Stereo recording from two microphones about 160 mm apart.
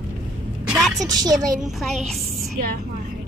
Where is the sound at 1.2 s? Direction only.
25° right (ahead or behind).